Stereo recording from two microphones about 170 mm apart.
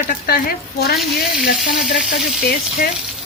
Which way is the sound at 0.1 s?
60° left (ahead or behind).